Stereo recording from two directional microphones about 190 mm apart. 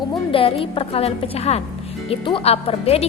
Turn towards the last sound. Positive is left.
turn(degrees=30)  # may be behind; listen again after turning